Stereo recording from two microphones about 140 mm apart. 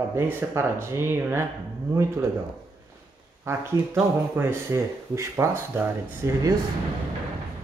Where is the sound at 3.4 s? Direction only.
20° right (ahead or behind).